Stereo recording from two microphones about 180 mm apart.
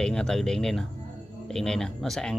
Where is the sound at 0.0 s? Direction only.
5° left (ahead or behind).